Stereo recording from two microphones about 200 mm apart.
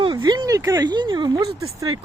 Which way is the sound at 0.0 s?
20° right (ahead or behind).